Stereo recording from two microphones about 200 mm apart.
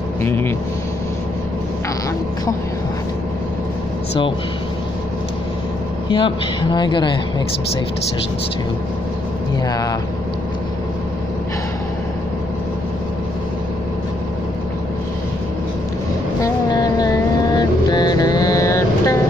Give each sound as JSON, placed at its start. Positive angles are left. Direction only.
{"t": 0.2, "sound": "speech", "side_deg": 10}
{"t": 6.0, "sound": "speech", "side_deg": 25}
{"t": 9.7, "sound": "speech", "side_deg": 20}
{"t": 16.3, "sound": "vehicle", "side_deg": 20}